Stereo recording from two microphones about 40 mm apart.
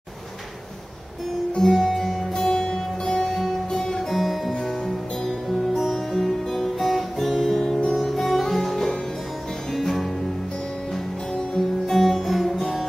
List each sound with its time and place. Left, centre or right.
1.6 s music: centre
2.3 s music: centre
3.7 s guitar: centre
4.1 s guitar: centre
4.6 s music: centre
10.9 s music: centre
11.8 s music: centre